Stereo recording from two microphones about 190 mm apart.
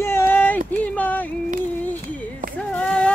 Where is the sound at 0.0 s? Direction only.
10° left (ahead or behind).